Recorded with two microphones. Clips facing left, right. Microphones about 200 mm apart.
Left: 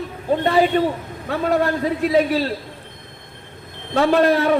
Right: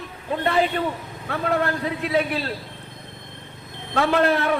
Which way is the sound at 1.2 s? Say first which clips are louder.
Left 4 dB; 35° left (ahead or behind).